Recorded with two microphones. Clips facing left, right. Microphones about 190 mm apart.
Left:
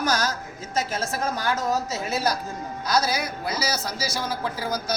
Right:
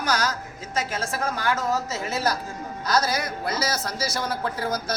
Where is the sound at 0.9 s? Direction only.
20° left (ahead or behind); by 5.0 s centre (ahead or behind).